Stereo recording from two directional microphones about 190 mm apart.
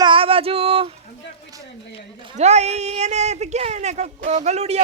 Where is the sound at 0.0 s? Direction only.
25° right (ahead or behind).